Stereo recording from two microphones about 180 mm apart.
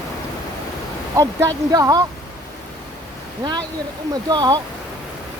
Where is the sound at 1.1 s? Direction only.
20° right (ahead or behind).